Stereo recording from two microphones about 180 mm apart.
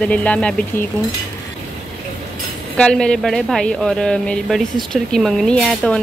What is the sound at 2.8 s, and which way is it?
Speech, 5° left (ahead or behind).